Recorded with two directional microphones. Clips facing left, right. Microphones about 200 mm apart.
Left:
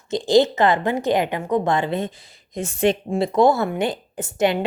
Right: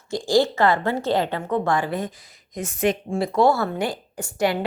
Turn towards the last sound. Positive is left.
turn(degrees=20)  # may be behind; listen again after turning